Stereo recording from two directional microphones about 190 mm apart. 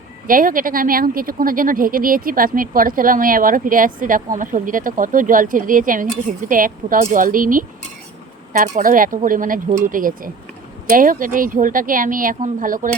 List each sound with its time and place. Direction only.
0.3 s a woman's voice: 45° right (ahead or behind)